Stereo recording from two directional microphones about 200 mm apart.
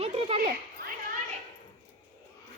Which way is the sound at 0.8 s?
45° right (ahead or behind).